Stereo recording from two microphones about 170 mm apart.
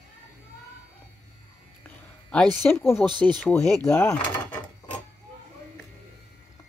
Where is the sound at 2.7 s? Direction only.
15° left (ahead or behind).